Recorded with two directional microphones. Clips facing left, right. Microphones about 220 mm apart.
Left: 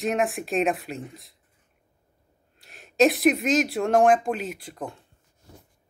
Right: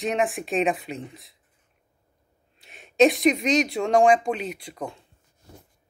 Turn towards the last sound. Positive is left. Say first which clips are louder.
# right 1 dB
turn(degrees=0)  # may be behind; listen again after turning